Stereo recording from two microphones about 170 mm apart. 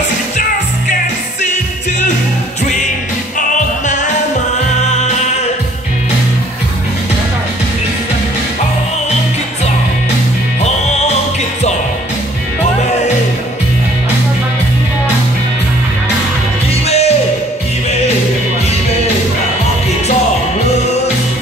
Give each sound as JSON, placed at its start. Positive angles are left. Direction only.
{"t": 3.3, "sound": "music", "side_deg": 45}
{"t": 16.8, "sound": "music", "side_deg": 40}